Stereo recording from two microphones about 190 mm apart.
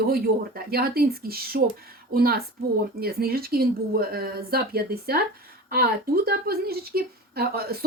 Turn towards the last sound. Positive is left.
turn(degrees=-55)  # may be behind; listen again after turning